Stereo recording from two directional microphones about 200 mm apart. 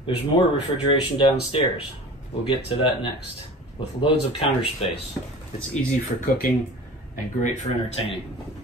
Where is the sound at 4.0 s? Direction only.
25° left (ahead or behind).